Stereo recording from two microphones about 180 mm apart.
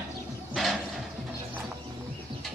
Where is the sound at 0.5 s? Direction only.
Centre (ahead or behind).